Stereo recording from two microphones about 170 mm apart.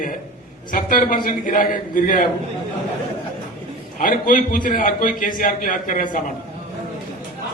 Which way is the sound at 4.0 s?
55° left (ahead or behind).